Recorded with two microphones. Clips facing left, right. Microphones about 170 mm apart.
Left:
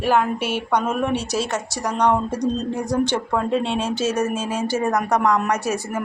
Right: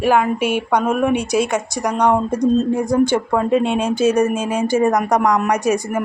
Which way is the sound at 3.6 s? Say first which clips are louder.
Right 5 dB; 50° right (ahead or behind).